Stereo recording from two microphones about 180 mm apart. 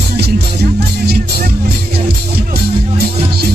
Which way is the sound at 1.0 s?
60° right (ahead or behind).